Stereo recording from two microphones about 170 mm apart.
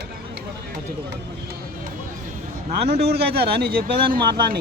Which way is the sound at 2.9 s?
70° right (ahead or behind).